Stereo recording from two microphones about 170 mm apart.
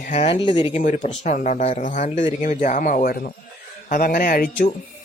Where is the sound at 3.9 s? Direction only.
55° left (ahead or behind).